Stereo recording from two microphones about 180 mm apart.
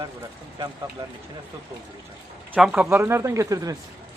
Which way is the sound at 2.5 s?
5° right (ahead or behind).